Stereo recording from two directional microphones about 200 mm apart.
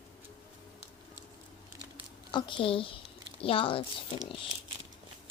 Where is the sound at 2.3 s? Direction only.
25° left (ahead or behind).